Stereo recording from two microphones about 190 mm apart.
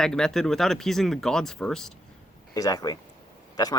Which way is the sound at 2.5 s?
20° left (ahead or behind).